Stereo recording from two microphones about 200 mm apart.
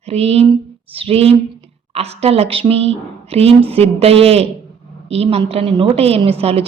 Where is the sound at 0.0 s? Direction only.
30° right (ahead or behind).